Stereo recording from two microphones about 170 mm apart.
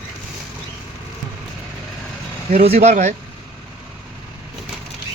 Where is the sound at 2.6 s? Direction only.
40° right (ahead or behind).